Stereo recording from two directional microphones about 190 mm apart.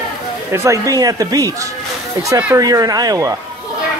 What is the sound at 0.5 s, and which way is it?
Speech, 15° right (ahead or behind).